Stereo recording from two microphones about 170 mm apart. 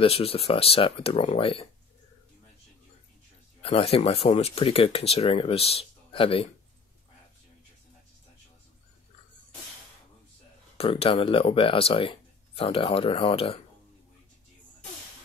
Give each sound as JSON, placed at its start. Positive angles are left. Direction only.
{"t": 0.0, "sound": "speech", "side_deg": 35}
{"t": 3.6, "sound": "speech", "side_deg": 35}
{"t": 10.8, "sound": "speech", "side_deg": 35}